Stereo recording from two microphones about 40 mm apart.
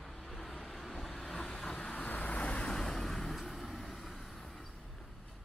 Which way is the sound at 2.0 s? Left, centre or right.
Left.